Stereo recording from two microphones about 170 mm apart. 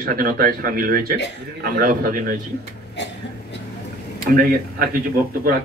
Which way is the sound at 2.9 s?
90° left.